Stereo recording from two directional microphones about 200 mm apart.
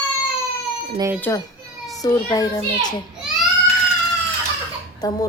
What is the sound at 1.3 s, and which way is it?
A child's voice, 10° left (ahead or behind).